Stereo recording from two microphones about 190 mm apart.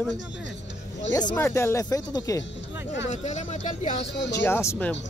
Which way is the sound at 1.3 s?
10° left (ahead or behind).